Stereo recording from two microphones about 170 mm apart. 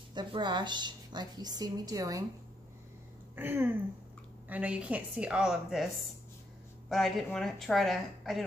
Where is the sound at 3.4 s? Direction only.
10° right (ahead or behind).